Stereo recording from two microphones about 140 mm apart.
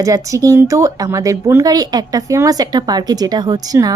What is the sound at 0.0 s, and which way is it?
Speech, 25° right (ahead or behind).